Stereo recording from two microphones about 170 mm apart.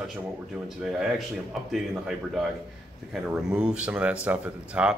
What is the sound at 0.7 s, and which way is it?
Speech, 5° right (ahead or behind).